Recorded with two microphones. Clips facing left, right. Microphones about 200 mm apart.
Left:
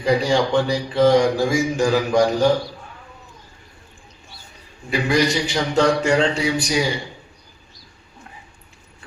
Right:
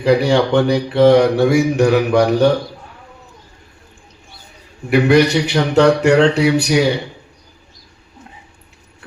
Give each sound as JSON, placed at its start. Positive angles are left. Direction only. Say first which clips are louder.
{"t": 0.0, "sound": "speech", "louder": "right 5 dB", "side_deg": -65}
{"t": 4.9, "sound": "speech", "louder": "right 7 dB", "side_deg": -65}